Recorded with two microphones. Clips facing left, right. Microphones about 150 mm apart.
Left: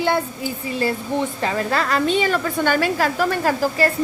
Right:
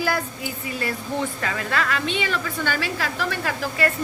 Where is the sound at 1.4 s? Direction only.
30° left (ahead or behind).